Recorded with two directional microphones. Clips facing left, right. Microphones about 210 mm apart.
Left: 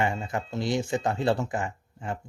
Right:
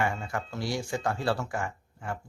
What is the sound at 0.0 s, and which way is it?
Speech, 20° left (ahead or behind).